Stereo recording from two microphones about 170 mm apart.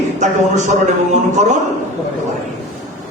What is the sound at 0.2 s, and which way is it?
Speech, 45° right (ahead or behind).